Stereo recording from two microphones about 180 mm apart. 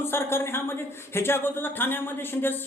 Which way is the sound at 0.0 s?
15° left (ahead or behind).